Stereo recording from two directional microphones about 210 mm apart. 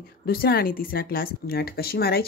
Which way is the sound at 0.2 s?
45° left (ahead or behind).